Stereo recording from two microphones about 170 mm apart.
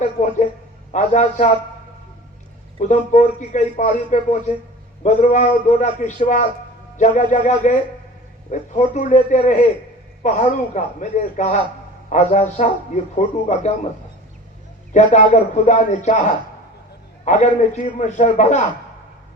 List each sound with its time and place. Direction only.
0.0 s a sound: 45° left (ahead or behind)
0.9 s a man's voice: 45° left (ahead or behind)
2.7 s a man's voice: 45° left (ahead or behind)
14.9 s a man's voice: 45° left (ahead or behind)